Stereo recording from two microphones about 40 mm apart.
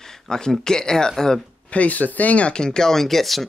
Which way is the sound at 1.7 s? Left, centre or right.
Left.